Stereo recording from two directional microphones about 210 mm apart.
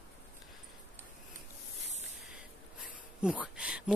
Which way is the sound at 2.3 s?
5° right (ahead or behind).